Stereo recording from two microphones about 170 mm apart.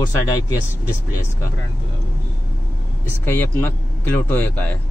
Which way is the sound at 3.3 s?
10° left (ahead or behind).